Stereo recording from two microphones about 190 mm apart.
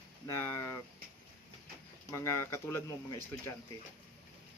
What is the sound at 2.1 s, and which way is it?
Speech, 15° left (ahead or behind).